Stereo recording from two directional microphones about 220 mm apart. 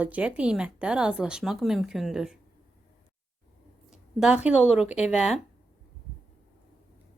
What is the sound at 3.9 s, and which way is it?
Speech, 5° right (ahead or behind).